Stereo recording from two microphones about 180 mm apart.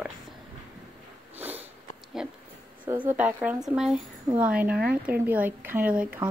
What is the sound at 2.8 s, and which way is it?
A woman's voice, 10° right (ahead or behind).